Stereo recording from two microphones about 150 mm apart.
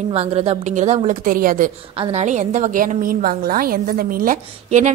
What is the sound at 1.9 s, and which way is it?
A woman's voice, 45° right (ahead or behind).